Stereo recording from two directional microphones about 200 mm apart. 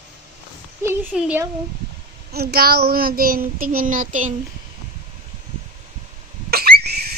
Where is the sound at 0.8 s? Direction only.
10° right (ahead or behind).